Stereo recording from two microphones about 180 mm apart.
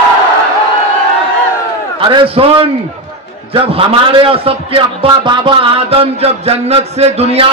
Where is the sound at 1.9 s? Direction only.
30° right (ahead or behind).